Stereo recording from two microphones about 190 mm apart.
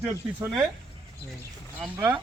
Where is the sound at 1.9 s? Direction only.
10° right (ahead or behind).